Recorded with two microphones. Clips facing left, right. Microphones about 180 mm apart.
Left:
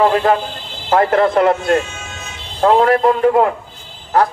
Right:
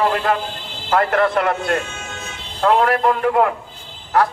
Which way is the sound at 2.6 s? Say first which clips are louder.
Left 4 dB; 35° left (ahead or behind).